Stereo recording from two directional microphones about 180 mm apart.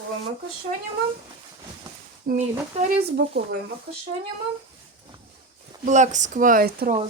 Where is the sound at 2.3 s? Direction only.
55° right (ahead or behind).